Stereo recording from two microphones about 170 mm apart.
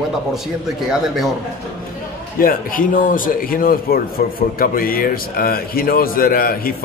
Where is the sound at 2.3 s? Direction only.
55° left (ahead or behind).